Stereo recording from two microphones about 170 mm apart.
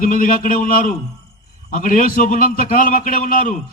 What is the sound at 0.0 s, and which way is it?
A man's voice, 50° left (ahead or behind).